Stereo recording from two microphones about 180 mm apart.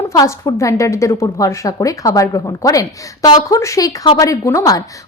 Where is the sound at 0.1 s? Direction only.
20° left (ahead or behind).